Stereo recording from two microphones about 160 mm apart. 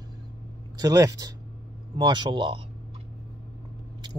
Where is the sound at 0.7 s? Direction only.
20° right (ahead or behind).